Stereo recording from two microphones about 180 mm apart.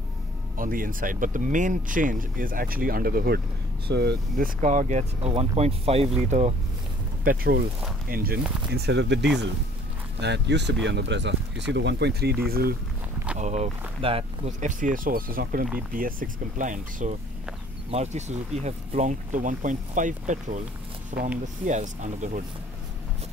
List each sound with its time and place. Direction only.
0.6 s speech: 50° right (ahead or behind)
3.8 s speech: 70° right (ahead or behind)
4.6 s speech: 45° right (ahead or behind)
7.2 s speech: 55° right (ahead or behind)
13.4 s speech: 40° right (ahead or behind)